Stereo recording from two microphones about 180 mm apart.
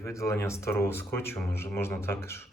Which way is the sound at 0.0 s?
15° left (ahead or behind).